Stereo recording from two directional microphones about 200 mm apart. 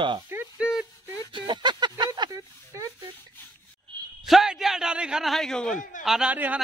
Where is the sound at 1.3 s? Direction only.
25° right (ahead or behind).